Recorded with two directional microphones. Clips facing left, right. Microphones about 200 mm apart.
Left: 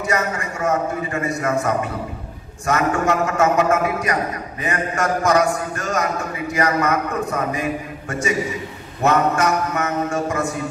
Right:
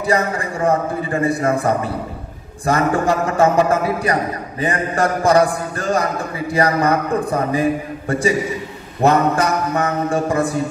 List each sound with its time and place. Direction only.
0.0 s a man's voice: 30° right (ahead or behind)